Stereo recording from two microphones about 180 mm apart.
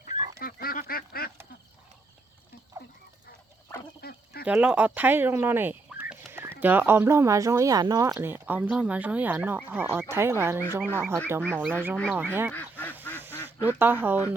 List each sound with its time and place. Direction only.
0.3 s duck: 55° left (ahead or behind)
4.0 s frog: 60° left (ahead or behind)
4.4 s speech: 5° right (ahead or behind)
11.4 s speech: 5° left (ahead or behind)
11.7 s speech: 10° right (ahead or behind)
12.5 s duck: 10° left (ahead or behind)
13.6 s speech: 10° right (ahead or behind)